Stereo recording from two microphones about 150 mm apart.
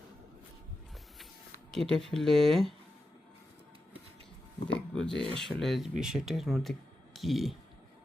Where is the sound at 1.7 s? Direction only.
5° left (ahead or behind).